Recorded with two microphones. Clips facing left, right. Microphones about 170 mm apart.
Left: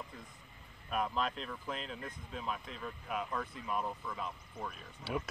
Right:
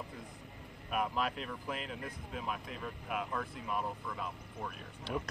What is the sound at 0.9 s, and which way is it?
Speech, 5° right (ahead or behind).